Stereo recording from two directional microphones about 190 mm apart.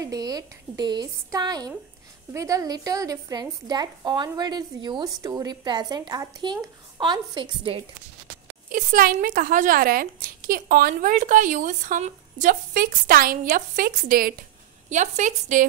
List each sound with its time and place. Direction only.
0.0 s a woman's voice: 20° right (ahead or behind)
8.6 s speech: 45° right (ahead or behind)
14.9 s a woman's voice: 40° right (ahead or behind)